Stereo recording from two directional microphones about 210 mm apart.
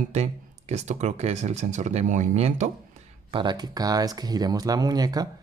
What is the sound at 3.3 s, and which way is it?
Speech, 20° right (ahead or behind).